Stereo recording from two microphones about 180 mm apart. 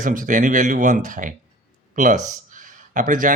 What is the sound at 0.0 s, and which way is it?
Speech, 50° right (ahead or behind).